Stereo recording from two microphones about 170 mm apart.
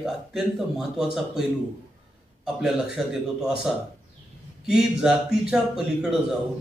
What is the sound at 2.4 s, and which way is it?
Speech, 5° right (ahead or behind).